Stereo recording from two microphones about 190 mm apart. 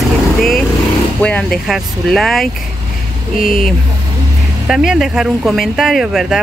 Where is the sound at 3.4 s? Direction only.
50° left (ahead or behind).